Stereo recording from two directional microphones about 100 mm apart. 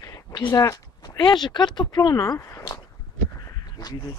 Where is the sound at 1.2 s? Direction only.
50° left (ahead or behind).